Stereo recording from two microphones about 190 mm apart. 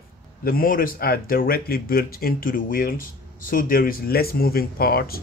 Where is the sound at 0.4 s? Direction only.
50° left (ahead or behind).